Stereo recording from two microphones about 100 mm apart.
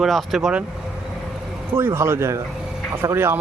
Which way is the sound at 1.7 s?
25° right (ahead or behind).